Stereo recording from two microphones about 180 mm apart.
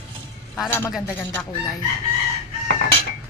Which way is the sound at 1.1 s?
10° left (ahead or behind).